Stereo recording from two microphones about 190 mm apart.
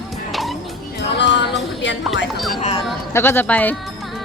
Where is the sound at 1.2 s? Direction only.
70° left (ahead or behind).